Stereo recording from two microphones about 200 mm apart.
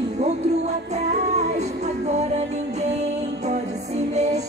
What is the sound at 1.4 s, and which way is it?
Music, 35° right (ahead or behind).